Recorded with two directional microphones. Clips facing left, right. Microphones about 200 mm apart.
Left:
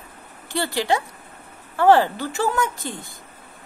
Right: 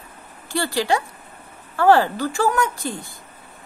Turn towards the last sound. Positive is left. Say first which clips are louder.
# right 2 dB
turn(degrees=20)  # may be behind; listen again after turning